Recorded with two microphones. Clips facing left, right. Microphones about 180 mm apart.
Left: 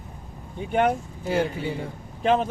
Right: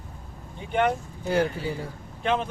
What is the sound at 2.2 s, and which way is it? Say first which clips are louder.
Speech: left 4 dB; 40° left (ahead or behind).